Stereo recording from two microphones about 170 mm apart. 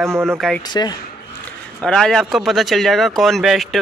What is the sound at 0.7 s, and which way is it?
Speech, 25° left (ahead or behind).